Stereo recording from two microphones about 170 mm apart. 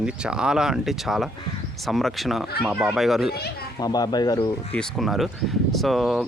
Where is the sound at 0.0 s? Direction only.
5° right (ahead or behind).